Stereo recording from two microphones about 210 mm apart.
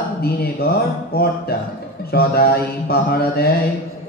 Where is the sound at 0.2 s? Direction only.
50° left (ahead or behind).